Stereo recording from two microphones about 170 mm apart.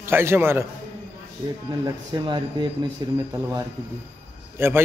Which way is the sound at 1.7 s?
25° right (ahead or behind).